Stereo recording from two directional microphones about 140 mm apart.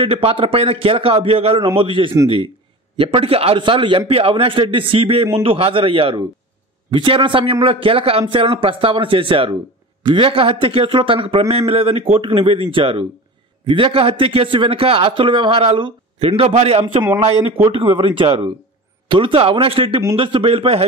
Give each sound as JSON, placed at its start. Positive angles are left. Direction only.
{"t": 0.0, "sound": "a man's voice", "side_deg": -40}